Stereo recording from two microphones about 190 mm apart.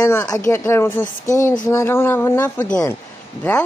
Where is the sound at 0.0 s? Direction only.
15° left (ahead or behind).